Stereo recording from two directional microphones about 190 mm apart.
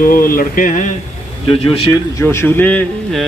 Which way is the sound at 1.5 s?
30° left (ahead or behind).